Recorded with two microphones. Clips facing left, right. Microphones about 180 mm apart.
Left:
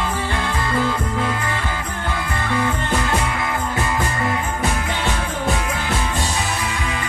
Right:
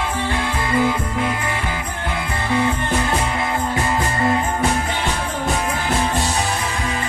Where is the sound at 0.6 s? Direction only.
15° right (ahead or behind).